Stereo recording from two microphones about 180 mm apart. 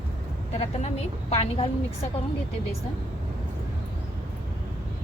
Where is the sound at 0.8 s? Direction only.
40° left (ahead or behind).